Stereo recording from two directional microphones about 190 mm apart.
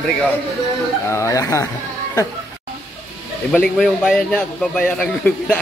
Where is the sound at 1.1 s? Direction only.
15° left (ahead or behind).